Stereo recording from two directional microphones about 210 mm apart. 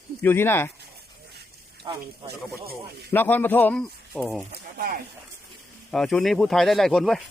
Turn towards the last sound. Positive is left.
turn(degrees=0)  # may be behind; listen again after turning